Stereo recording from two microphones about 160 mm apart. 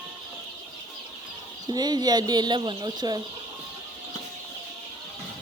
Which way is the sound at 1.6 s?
25° right (ahead or behind).